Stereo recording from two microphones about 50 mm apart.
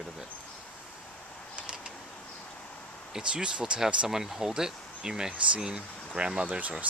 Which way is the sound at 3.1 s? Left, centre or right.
Centre.